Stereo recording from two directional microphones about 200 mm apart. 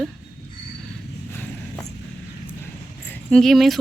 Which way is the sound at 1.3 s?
10° left (ahead or behind).